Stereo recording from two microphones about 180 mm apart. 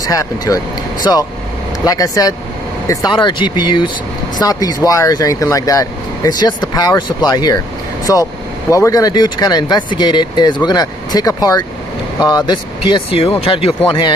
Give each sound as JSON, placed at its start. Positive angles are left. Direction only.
{"t": 0.0, "sound": "speech", "side_deg": 20}